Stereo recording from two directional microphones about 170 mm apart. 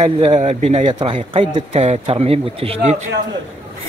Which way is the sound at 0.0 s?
35° right (ahead or behind).